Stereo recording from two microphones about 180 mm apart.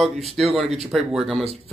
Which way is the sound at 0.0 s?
Centre (ahead or behind).